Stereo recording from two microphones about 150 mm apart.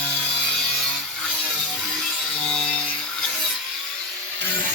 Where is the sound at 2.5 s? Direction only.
5° left (ahead or behind).